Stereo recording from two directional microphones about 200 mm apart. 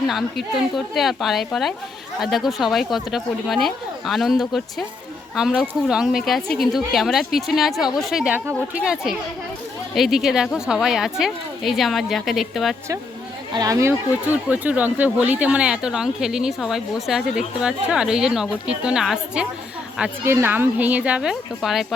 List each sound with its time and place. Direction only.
0.1 s speech: centre (ahead or behind)
13.5 s speech: 20° right (ahead or behind); by 21.9 s centre (ahead or behind)